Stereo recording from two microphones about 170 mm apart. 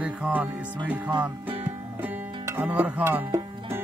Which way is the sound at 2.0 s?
15° right (ahead or behind).